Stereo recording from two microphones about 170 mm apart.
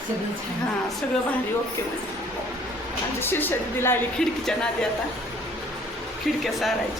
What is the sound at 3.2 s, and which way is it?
Speech, 15° left (ahead or behind).